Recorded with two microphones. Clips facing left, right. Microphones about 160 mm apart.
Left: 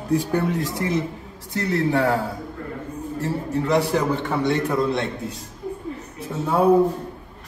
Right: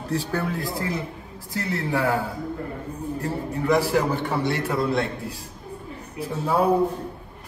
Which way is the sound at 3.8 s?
20° left (ahead or behind).